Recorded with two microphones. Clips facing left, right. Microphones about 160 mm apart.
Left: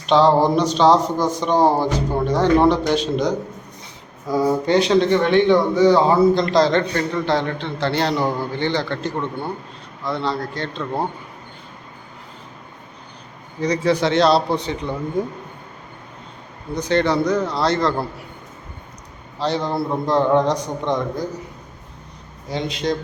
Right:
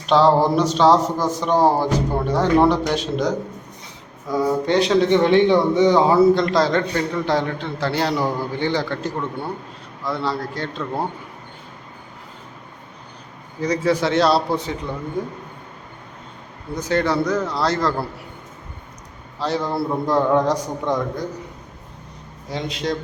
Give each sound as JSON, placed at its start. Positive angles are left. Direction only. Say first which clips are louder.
{"t": 0.0, "sound": "a man's voice", "louder": "left 1 dB", "side_deg": -5}
{"t": 5.1, "sound": "a man's voice", "louder": "right 2 dB", "side_deg": -25}
{"t": 6.1, "sound": "a man's voice", "louder": "right 1 dB", "side_deg": -5}
{"t": 13.6, "sound": "a man's voice", "louder": "left 1 dB", "side_deg": -5}
{"t": 16.7, "sound": "a man's voice", "louder": "left 2 dB", "side_deg": -5}
{"t": 19.4, "sound": "a man's voice", "louder": "left 1 dB", "side_deg": -5}
{"t": 22.4, "sound": "a man's voice", "louder": "left 2 dB", "side_deg": 0}